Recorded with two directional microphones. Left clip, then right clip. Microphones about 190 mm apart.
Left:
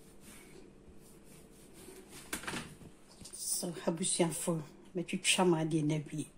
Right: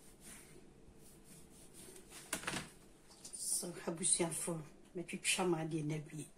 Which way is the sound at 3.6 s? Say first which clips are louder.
Left 8 dB; 50° left (ahead or behind).